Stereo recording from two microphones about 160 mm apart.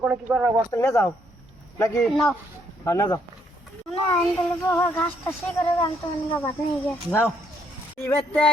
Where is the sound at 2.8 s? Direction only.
20° left (ahead or behind).